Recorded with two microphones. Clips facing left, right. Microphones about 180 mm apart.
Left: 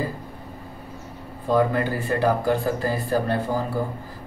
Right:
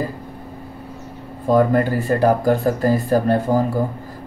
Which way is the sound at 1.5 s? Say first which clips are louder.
Right 5 dB; 45° right (ahead or behind).